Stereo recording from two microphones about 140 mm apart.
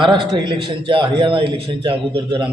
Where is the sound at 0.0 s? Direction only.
35° right (ahead or behind).